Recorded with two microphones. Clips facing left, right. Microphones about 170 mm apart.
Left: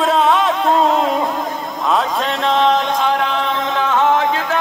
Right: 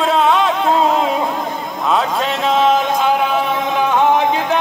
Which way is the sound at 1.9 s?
Centre (ahead or behind).